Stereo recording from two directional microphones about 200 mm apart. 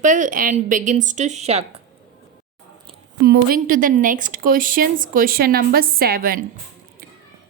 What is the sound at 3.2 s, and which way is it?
A woman's voice, 45° right (ahead or behind).